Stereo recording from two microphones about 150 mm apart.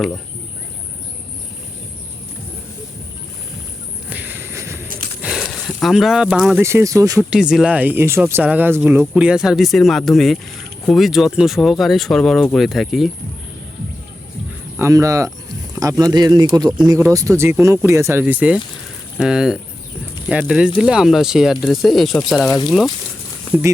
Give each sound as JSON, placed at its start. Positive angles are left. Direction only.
{"t": 4.1, "sound": "a sound", "side_deg": -10}
{"t": 5.2, "sound": "a sound", "side_deg": 0}
{"t": 6.6, "sound": "speech", "side_deg": -15}
{"t": 7.2, "sound": "speech", "side_deg": -5}
{"t": 14.8, "sound": "speech", "side_deg": -20}
{"t": 22.4, "sound": "speech", "side_deg": 25}